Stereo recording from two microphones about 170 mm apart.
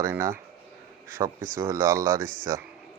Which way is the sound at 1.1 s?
50° right (ahead or behind).